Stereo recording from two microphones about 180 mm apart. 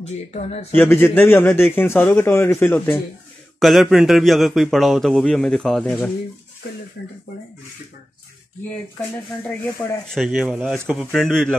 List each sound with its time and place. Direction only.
0.0 s speech: 35° left (ahead or behind)
0.7 s a man's voice: 10° left (ahead or behind)
3.5 s speech: centre (ahead or behind)
7.0 s speech: 70° left (ahead or behind)
10.0 s speech: centre (ahead or behind)